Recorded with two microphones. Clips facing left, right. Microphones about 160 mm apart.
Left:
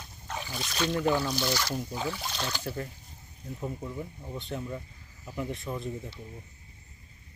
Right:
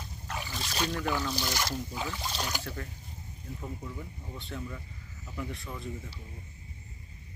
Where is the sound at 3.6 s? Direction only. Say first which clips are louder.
Left 6 dB; 20° left (ahead or behind).